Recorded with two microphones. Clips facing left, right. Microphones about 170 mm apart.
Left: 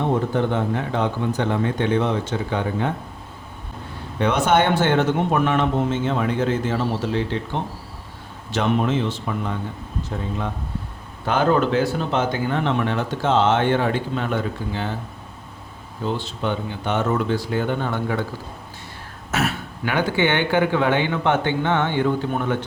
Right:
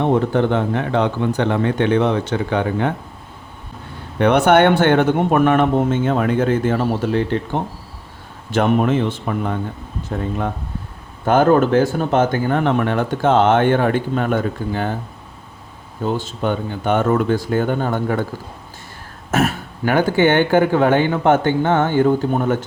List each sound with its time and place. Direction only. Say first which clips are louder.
0.0 s speech: right 5 dB; 70° right (ahead or behind)
4.2 s speech: right 6 dB; 60° right (ahead or behind)
11.3 s speech: right 5 dB; 50° right (ahead or behind)
16.0 s speech: right 4 dB; 45° right (ahead or behind)
19.3 s speech: right 5 dB; 45° right (ahead or behind)